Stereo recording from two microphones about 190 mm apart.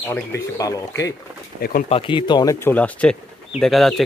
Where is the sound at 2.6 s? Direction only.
10° left (ahead or behind).